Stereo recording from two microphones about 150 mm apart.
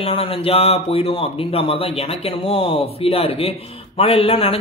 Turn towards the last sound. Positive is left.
turn(degrees=40)  # may be behind; listen again after turning